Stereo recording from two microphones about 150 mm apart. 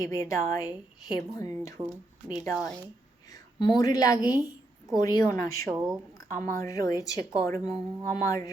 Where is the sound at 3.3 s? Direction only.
25° left (ahead or behind).